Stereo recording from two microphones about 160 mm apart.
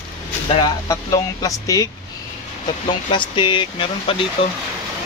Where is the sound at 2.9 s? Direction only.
30° left (ahead or behind).